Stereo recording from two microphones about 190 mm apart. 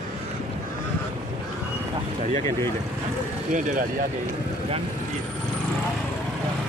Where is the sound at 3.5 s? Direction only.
45° right (ahead or behind).